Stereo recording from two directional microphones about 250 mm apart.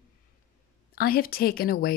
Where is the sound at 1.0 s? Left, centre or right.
Left.